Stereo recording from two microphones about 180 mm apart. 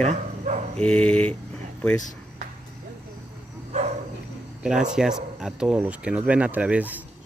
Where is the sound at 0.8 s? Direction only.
5° left (ahead or behind).